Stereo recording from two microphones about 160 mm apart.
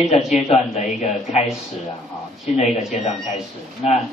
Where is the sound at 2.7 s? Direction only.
5° right (ahead or behind).